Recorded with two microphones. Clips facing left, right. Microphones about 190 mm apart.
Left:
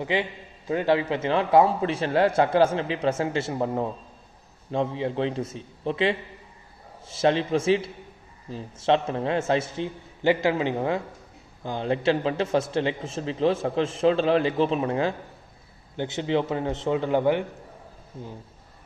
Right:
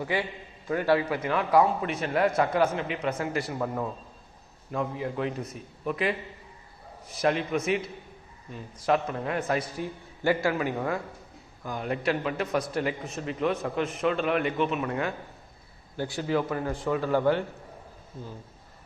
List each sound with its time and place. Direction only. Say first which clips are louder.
0.0 s a man's voice: left 3 dB; 20° left (ahead or behind)